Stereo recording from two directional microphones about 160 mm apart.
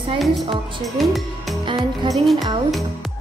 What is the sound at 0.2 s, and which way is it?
A woman's voice, centre (ahead or behind).